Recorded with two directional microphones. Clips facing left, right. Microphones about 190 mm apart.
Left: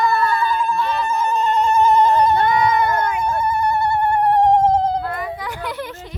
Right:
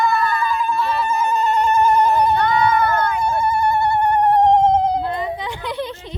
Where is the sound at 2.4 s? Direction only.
20° left (ahead or behind).